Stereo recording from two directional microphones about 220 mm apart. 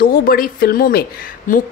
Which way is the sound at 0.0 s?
40° left (ahead or behind).